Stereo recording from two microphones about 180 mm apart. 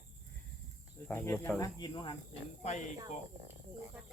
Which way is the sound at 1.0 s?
10° left (ahead or behind).